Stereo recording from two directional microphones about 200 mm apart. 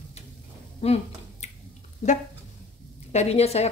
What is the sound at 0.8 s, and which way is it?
Speech, 30° left (ahead or behind).